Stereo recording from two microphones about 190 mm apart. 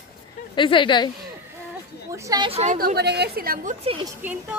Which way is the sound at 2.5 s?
35° right (ahead or behind).